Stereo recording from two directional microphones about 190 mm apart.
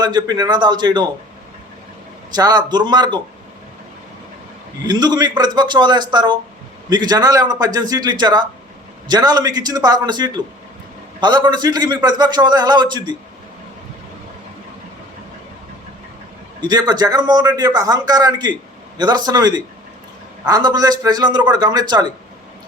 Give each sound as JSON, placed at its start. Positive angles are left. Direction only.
{"t": 0.0, "sound": "a man's voice", "side_deg": -20}
{"t": 2.3, "sound": "a man's voice", "side_deg": -20}
{"t": 4.9, "sound": "a man's voice", "side_deg": -20}
{"t": 16.6, "sound": "a man's voice", "side_deg": -20}